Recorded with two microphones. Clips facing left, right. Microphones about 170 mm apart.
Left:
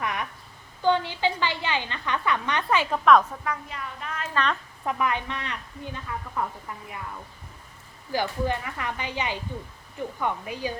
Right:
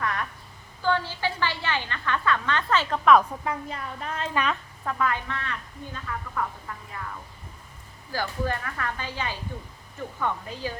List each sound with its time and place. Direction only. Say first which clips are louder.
0.0 s a sound: right 1 dB; 15° left (ahead or behind)
0.8 s a woman's voice: left 3 dB; 20° left (ahead or behind)
3.0 s a woman's voice: even; centre (ahead or behind)
3.4 s a woman's voice: right 1 dB; 30° right (ahead or behind)
4.9 s a woman's voice: left 1 dB; 20° left (ahead or behind)
8.1 s a woman's voice: left 2 dB; 20° left (ahead or behind)